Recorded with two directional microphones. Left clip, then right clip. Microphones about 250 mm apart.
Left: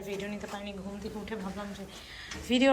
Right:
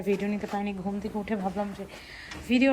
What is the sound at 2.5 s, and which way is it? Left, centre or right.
Speech, centre.